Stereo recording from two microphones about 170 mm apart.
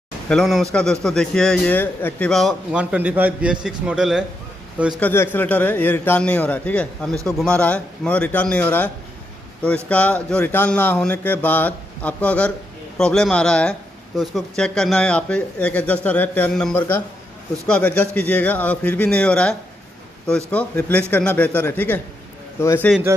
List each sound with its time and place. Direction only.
0.3 s a man's voice: centre (ahead or behind)
5.0 s speech: 15° left (ahead or behind)